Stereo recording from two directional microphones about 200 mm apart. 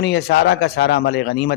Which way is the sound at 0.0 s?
55° left (ahead or behind).